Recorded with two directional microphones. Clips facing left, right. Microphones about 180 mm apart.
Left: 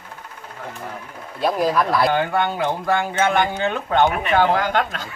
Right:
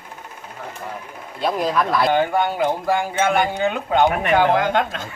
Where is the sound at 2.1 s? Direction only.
10° right (ahead or behind).